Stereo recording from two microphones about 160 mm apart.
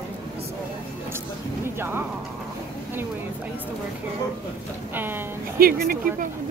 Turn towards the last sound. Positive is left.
turn(degrees=-70)  # may be behind; listen again after turning